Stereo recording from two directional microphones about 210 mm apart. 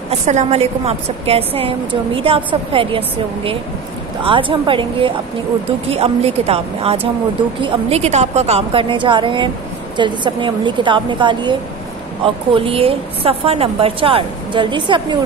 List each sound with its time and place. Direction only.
0.1 s a woman's voice: 30° right (ahead or behind)
12.5 s a woman's voice: 25° right (ahead or behind)